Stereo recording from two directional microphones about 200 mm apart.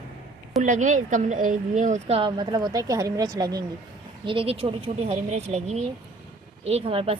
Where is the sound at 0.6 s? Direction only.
40° right (ahead or behind).